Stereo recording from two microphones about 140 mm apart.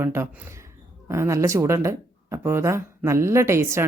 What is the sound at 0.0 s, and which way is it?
Speech, 20° right (ahead or behind).